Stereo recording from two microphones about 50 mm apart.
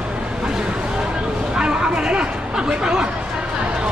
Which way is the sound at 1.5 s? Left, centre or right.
Centre.